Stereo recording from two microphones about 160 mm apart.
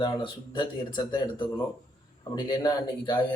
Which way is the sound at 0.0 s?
30° left (ahead or behind).